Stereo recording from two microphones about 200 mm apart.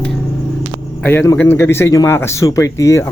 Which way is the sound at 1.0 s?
10° left (ahead or behind).